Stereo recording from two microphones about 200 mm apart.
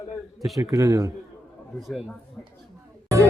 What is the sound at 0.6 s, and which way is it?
Speech, 15° right (ahead or behind).